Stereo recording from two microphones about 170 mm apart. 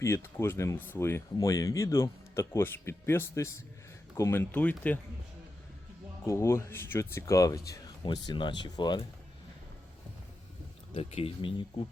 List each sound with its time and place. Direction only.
0.0 s speech: 15° left (ahead or behind)
6.2 s speech: 15° left (ahead or behind)
10.9 s speech: 35° left (ahead or behind)